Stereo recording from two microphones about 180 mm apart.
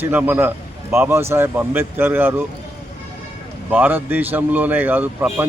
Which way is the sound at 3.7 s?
10° right (ahead or behind).